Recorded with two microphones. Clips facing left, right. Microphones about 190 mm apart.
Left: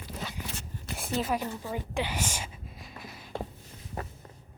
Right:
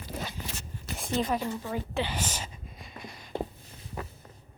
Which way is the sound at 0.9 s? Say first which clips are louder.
Right 1 dB; 5° left (ahead or behind).